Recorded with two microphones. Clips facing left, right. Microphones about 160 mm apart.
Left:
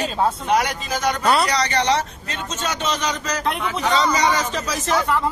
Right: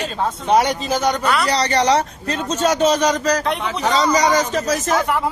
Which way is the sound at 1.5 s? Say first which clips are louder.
Right 3 dB; 35° right (ahead or behind).